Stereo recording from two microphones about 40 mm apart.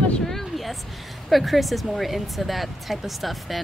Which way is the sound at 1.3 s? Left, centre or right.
Centre.